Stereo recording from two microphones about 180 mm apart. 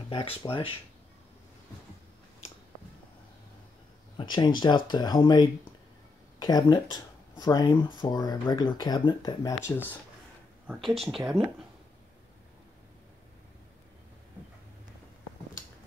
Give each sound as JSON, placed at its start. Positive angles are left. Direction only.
{"t": 0.1, "sound": "speech", "side_deg": 30}
{"t": 4.2, "sound": "speech", "side_deg": 25}
{"t": 10.7, "sound": "speech", "side_deg": 0}